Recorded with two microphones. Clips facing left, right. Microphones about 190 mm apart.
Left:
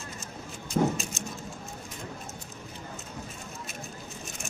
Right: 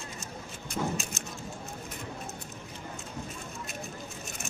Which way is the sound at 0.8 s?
40° left (ahead or behind).